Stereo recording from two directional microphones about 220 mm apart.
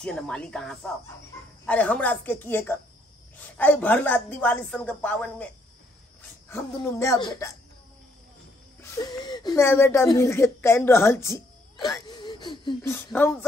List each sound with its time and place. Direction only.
0.0 s speech: 5° left (ahead or behind)
6.5 s speech: 15° left (ahead or behind)
8.8 s speech: 15° left (ahead or behind)